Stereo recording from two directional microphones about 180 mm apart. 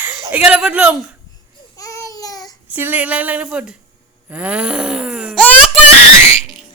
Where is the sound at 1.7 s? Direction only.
15° left (ahead or behind).